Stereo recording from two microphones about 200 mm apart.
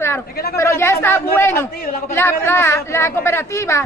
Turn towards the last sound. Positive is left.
turn(degrees=15)  # may be behind; listen again after turning